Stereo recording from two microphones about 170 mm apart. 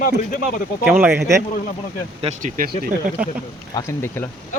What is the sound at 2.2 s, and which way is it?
Speech, 45° right (ahead or behind).